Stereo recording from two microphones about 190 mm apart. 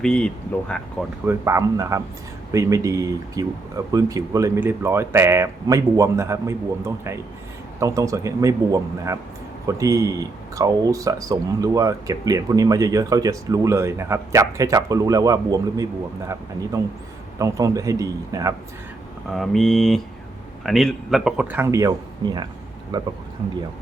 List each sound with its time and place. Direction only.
0.0 s speech: 5° left (ahead or behind)
1.2 s speech: 15° right (ahead or behind)
19.3 s speech: centre (ahead or behind); by 23.1 s 25° right (ahead or behind)